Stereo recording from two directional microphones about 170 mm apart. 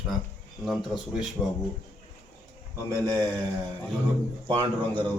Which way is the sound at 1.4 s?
5° right (ahead or behind).